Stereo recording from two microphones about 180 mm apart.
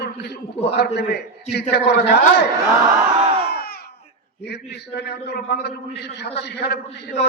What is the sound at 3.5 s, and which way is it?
Crowd, 60° left (ahead or behind).